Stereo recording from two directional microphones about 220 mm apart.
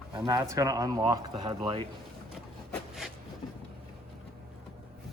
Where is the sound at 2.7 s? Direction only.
Centre (ahead or behind).